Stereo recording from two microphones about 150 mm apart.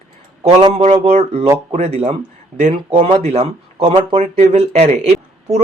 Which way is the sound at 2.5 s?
55° right (ahead or behind).